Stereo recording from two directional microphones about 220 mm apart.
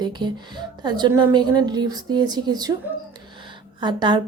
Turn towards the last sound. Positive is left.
turn(degrees=-20)  # may be behind; listen again after turning